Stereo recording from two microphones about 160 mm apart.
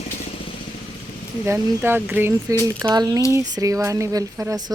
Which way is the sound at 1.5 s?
15° right (ahead or behind).